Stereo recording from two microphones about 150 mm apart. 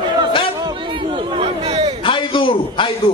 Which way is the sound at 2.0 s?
35° left (ahead or behind).